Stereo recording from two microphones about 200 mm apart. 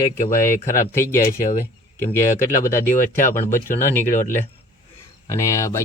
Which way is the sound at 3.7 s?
10° left (ahead or behind).